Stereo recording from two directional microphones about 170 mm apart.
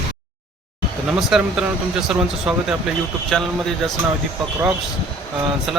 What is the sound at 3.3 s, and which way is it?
Speech, 5° left (ahead or behind).